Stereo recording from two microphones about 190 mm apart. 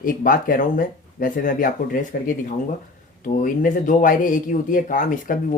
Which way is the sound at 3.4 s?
45° left (ahead or behind).